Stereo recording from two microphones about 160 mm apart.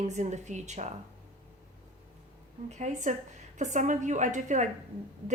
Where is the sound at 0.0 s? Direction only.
45° right (ahead or behind).